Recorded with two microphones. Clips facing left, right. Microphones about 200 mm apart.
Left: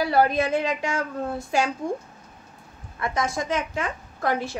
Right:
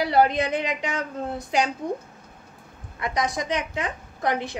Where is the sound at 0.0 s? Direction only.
20° right (ahead or behind).